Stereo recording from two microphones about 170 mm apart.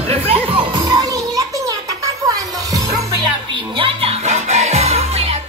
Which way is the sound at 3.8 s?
35° right (ahead or behind).